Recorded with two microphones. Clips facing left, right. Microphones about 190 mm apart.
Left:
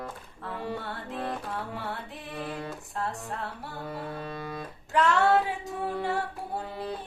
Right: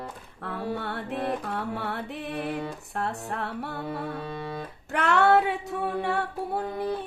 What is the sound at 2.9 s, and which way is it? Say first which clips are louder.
Female singing: right 3 dB; 65° right (ahead or behind).